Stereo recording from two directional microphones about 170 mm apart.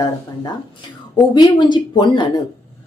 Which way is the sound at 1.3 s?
25° left (ahead or behind).